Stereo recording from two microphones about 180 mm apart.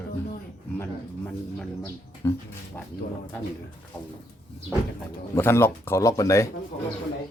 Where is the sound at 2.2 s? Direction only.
15° left (ahead or behind).